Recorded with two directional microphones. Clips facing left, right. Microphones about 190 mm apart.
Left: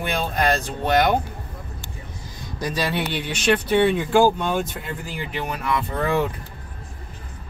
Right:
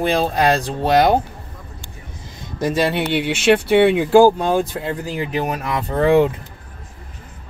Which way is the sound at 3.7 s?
70° right (ahead or behind).